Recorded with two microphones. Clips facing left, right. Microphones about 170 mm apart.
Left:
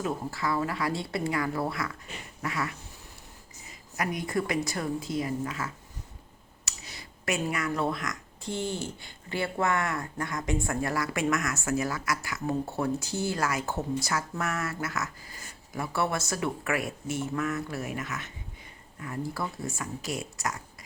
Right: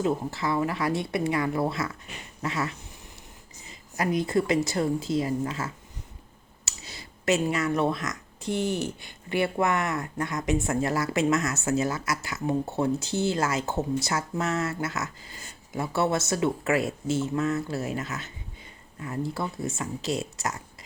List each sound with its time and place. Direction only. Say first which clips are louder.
0.0 s speech: right 4 dB; 25° right (ahead or behind)